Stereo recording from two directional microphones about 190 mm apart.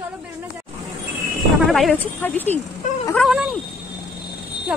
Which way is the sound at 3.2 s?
Centre (ahead or behind).